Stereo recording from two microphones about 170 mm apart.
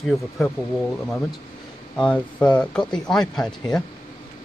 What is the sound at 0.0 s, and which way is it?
Speech, centre (ahead or behind).